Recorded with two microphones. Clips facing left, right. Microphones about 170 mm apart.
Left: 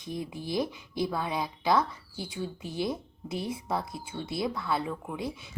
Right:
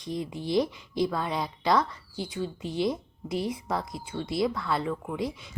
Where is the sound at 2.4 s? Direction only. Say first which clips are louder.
Right 3 dB; 25° right (ahead or behind).